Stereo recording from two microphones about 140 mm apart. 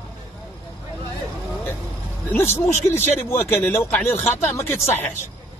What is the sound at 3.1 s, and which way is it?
Speech, 15° left (ahead or behind).